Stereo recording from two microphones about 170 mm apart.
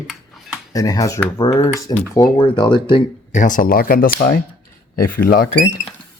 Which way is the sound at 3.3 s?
50° left (ahead or behind).